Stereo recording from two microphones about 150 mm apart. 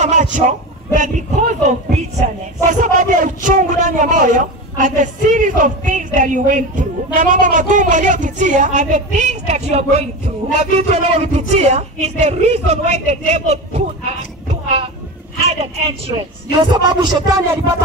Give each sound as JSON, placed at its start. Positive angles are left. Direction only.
{"t": 0.0, "sound": "a man's voice", "side_deg": -50}
{"t": 16.5, "sound": "speech", "side_deg": -30}